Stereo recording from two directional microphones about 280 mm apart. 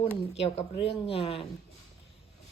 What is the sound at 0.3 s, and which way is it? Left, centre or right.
Speech, left.